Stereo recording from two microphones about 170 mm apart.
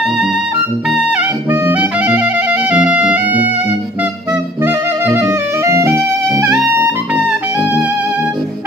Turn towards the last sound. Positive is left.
turn(degrees=-10)  # may be behind; listen again after turning